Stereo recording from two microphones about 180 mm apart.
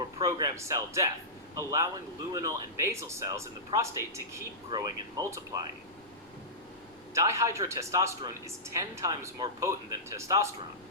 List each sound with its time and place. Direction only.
0.0 s a man's voice: 20° right (ahead or behind)
7.1 s speech: 15° right (ahead or behind)